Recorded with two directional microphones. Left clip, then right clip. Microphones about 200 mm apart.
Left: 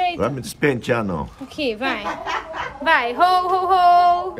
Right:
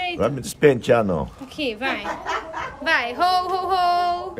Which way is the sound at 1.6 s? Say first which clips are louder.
Left 2 dB; 10° left (ahead or behind).